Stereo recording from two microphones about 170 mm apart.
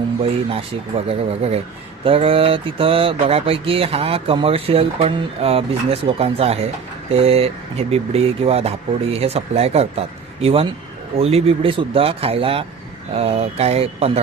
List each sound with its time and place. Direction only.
0.2 s speech: 35° right (ahead or behind)